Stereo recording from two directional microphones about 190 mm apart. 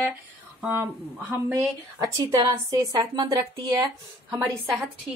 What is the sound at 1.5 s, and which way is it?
A woman's voice, 15° right (ahead or behind).